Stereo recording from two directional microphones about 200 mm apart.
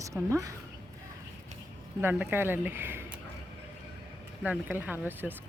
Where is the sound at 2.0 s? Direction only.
10° right (ahead or behind).